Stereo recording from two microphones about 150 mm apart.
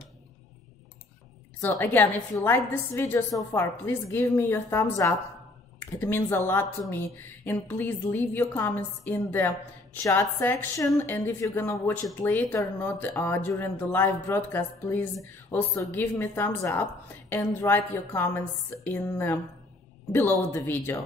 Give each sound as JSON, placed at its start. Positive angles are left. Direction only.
{"t": 1.6, "sound": "speech", "side_deg": 15}